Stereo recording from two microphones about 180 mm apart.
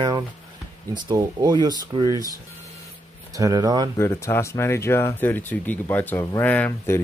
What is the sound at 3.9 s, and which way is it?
Speech, 15° left (ahead or behind).